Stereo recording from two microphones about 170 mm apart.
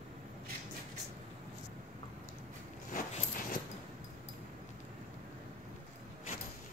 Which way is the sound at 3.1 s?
55° left (ahead or behind).